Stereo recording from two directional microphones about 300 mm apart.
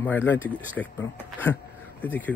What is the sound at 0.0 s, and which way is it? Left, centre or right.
Speech, centre.